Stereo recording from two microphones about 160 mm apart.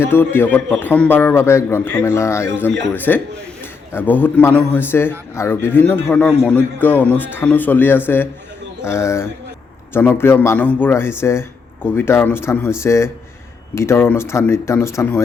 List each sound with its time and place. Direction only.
0.0 s a man's voice: 15° left (ahead or behind)